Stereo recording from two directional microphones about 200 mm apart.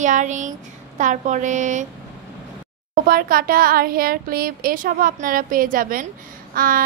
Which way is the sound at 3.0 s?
45° right (ahead or behind).